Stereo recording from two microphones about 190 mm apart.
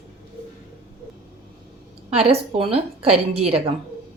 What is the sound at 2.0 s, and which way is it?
A woman's voice, 30° right (ahead or behind).